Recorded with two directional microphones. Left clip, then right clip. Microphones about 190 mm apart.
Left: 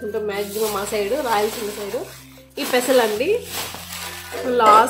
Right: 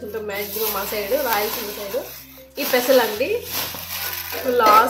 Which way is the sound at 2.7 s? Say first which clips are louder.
Right 1 dB; 30° left (ahead or behind).